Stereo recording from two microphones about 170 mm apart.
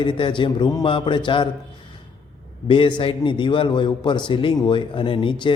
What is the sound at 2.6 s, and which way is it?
A man's voice, 30° left (ahead or behind).